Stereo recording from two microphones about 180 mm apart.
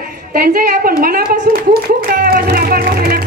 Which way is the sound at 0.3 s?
55° right (ahead or behind).